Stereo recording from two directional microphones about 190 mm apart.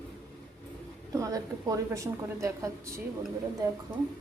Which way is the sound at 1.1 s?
15° right (ahead or behind).